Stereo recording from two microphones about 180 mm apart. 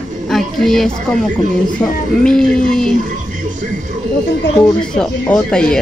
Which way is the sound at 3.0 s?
45° right (ahead or behind).